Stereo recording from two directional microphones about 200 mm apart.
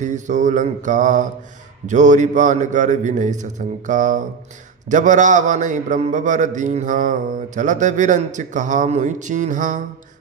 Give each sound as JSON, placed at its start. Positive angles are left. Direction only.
{"t": 0.0, "sound": "a man's voice", "side_deg": -40}